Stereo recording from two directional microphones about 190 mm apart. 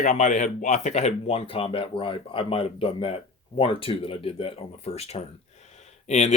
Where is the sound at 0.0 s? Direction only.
40° left (ahead or behind).